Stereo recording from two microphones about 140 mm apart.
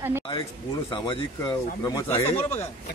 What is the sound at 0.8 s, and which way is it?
Speech, 40° left (ahead or behind).